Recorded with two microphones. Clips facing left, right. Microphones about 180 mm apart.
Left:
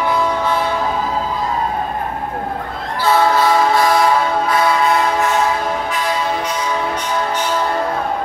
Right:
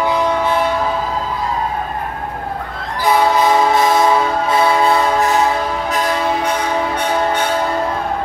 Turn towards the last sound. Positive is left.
turn(degrees=-60)  # may be behind; listen again after turning